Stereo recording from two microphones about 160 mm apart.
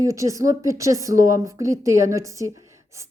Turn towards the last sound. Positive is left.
turn(degrees=-20)  # may be behind; listen again after turning